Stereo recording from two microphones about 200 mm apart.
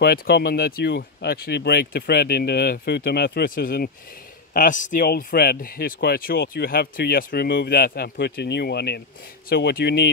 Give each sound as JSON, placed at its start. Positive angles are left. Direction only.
{"t": 0.0, "sound": "speech", "side_deg": 50}